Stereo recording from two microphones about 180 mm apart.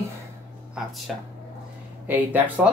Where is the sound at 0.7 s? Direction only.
Centre (ahead or behind).